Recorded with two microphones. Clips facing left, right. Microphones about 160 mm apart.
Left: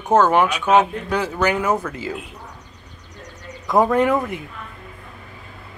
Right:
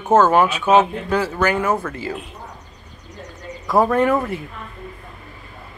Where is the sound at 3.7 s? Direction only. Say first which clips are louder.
Even; 15° left (ahead or behind).